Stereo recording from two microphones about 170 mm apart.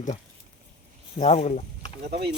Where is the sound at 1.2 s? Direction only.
40° left (ahead or behind).